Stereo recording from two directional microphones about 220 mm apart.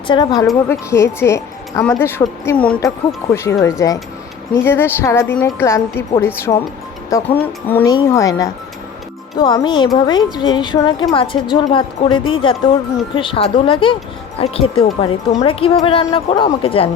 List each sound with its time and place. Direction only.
0.1 s speech: 20° left (ahead or behind)